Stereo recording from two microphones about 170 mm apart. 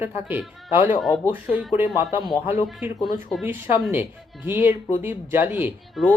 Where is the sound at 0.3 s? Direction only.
10° right (ahead or behind).